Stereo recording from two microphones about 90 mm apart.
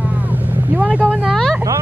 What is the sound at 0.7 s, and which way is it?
Speech, 20° right (ahead or behind).